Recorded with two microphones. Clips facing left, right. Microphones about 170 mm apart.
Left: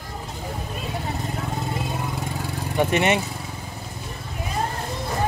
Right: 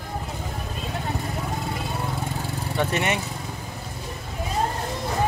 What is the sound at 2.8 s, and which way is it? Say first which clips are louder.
Speech: left 5 dB; 15° left (ahead or behind).